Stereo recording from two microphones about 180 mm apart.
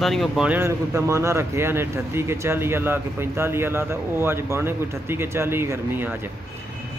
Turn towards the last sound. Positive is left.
turn(degrees=-10)  # may be behind; listen again after turning